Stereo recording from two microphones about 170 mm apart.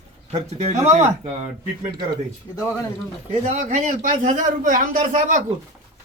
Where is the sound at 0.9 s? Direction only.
45° right (ahead or behind).